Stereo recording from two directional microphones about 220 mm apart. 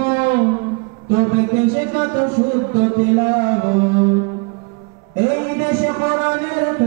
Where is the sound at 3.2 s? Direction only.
20° right (ahead or behind).